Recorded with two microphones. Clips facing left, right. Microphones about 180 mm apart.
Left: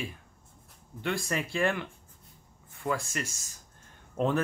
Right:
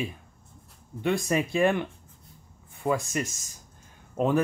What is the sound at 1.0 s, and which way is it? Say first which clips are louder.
Speech: right 6 dB; 20° right (ahead or behind).